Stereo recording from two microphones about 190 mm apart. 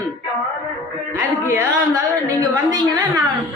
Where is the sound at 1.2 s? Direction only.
15° right (ahead or behind).